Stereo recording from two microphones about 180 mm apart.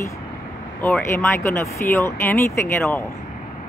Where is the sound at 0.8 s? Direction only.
10° left (ahead or behind).